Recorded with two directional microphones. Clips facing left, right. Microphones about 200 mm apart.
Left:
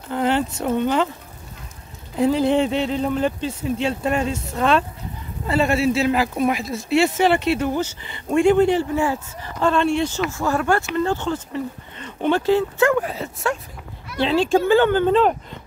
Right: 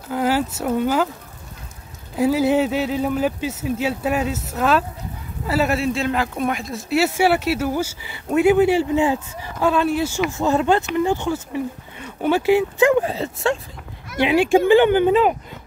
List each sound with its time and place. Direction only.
0.1 s speech: 5° right (ahead or behind)
2.1 s speech: 5° right (ahead or behind)
9.6 s speech: 5° right (ahead or behind)
10.3 s speech: 20° right (ahead or behind)
14.2 s speech: 10° right (ahead or behind)